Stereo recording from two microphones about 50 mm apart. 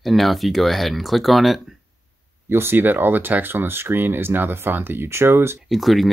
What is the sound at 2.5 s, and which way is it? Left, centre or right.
Speech, right.